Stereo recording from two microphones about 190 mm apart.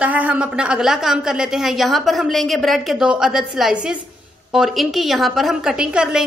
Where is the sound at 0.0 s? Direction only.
10° right (ahead or behind).